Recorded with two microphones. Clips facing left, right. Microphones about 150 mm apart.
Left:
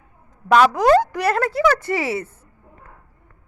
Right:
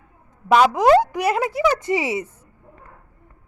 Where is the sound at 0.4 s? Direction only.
15° right (ahead or behind).